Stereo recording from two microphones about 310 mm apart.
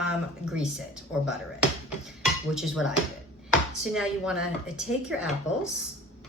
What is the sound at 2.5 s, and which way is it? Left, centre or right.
Speech, centre.